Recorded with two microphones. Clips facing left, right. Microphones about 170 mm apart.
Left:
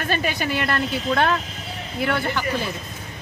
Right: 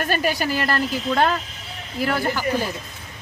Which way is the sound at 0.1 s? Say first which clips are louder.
Even; 40° right (ahead or behind).